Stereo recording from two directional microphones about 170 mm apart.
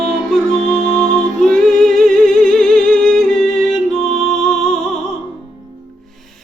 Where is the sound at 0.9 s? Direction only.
5° left (ahead or behind).